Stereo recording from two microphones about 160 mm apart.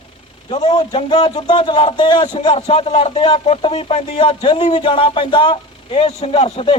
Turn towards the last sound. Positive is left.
turn(degrees=35)  # may be behind; listen again after turning